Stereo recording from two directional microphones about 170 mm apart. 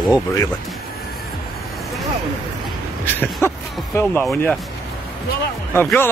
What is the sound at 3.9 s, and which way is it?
Speech, 15° left (ahead or behind).